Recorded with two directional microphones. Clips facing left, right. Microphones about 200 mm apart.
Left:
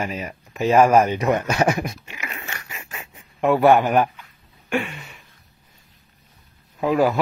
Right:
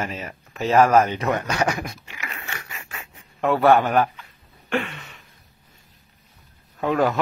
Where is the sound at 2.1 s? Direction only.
20° left (ahead or behind).